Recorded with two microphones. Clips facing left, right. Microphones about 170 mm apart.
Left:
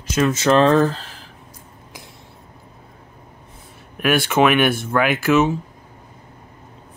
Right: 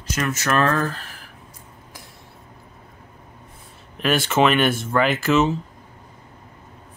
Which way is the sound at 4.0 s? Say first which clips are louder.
Left 2 dB; 5° left (ahead or behind).